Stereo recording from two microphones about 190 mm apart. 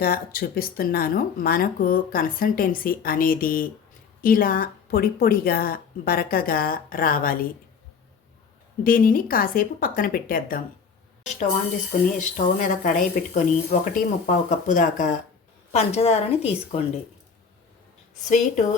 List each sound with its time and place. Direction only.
0.0 s speech: 50° left (ahead or behind)
8.8 s speech: 50° left (ahead or behind)
12.1 s a woman's voice: 45° left (ahead or behind)
18.3 s a woman's voice: 40° left (ahead or behind)